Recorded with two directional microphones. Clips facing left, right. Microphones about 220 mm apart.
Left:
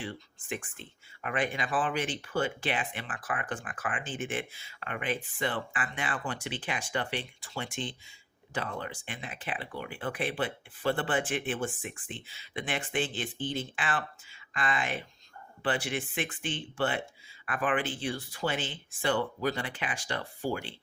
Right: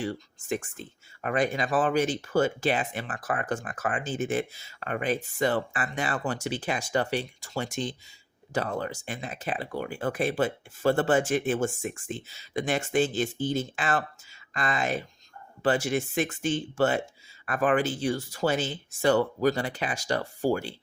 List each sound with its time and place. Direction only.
0.0 s speech: 40° right (ahead or behind)